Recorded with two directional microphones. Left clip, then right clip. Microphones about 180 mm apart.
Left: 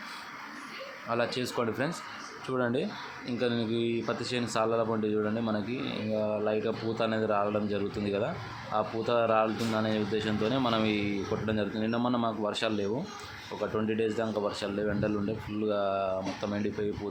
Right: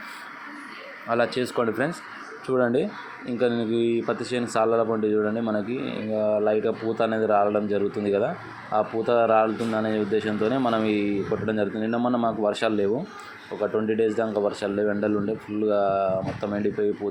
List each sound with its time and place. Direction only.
1.0 s speech: 15° right (ahead or behind)